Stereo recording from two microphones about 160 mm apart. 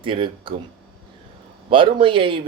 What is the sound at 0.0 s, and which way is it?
Speech, 30° right (ahead or behind).